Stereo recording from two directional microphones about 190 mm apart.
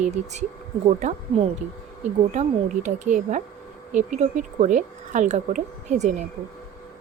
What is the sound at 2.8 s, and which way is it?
Speech, 40° right (ahead or behind).